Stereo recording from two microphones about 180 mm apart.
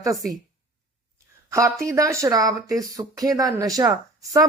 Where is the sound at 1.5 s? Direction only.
15° right (ahead or behind).